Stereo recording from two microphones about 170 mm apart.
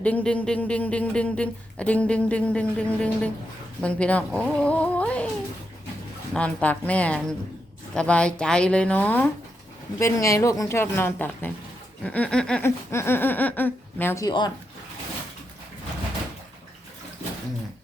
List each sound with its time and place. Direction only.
0.0 s a man's voice: 5° left (ahead or behind)
6.3 s a man's voice: 5° left (ahead or behind)
12.0 s a sound: 10° left (ahead or behind)
12.6 s a man's voice: 15° left (ahead or behind)